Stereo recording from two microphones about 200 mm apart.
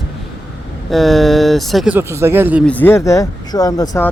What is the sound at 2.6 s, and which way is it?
Speech, 10° left (ahead or behind).